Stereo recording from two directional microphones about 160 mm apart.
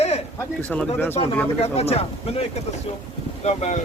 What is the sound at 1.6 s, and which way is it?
Speech, 40° left (ahead or behind).